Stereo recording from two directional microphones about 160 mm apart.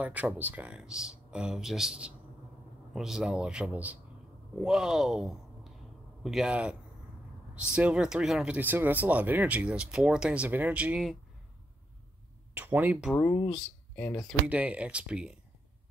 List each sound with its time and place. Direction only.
0.0 s a man's voice: 10° right (ahead or behind)
12.5 s speech: 10° right (ahead or behind)
13.1 s speech: 15° left (ahead or behind)
13.5 s speech: 5° left (ahead or behind)
14.5 s speech: 10° right (ahead or behind)